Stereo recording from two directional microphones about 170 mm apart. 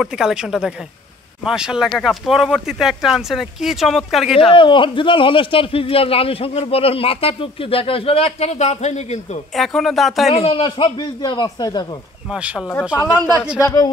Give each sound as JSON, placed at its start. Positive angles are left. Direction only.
{"t": 0.0, "sound": "speech", "side_deg": -5}
{"t": 4.4, "sound": "a man's voice", "side_deg": 30}
{"t": 9.6, "sound": "speech", "side_deg": 0}
{"t": 10.3, "sound": "speech", "side_deg": 35}
{"t": 12.3, "sound": "speech", "side_deg": -5}
{"t": 13.6, "sound": "speech", "side_deg": 20}